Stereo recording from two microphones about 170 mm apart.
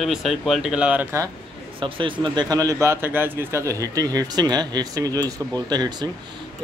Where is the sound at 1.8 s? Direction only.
30° right (ahead or behind).